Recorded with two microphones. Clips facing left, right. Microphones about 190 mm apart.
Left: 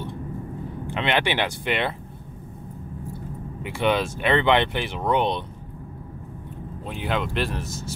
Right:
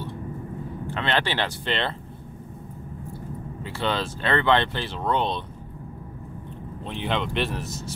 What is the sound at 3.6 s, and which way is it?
Speech, 15° left (ahead or behind).